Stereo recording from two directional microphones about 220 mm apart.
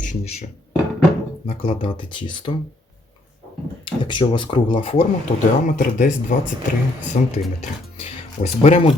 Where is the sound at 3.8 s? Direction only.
20° left (ahead or behind).